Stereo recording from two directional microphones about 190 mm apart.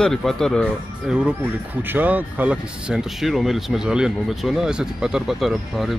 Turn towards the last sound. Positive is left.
turn(degrees=0)  # may be behind; listen again after turning